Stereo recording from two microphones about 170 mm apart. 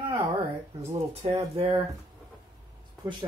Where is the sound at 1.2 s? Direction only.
30° right (ahead or behind).